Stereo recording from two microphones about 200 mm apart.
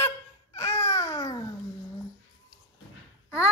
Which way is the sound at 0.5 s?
15° left (ahead or behind).